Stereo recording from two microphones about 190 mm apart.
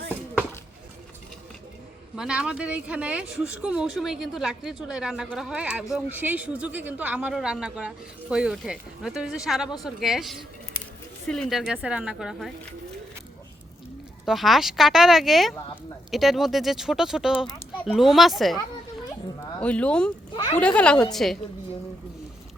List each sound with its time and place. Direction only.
2.1 s speech: 5° right (ahead or behind)
14.3 s speech: centre (ahead or behind)
19.5 s speech: 5° left (ahead or behind)
20.3 s speech: 25° left (ahead or behind)
20.6 s speech: 5° left (ahead or behind)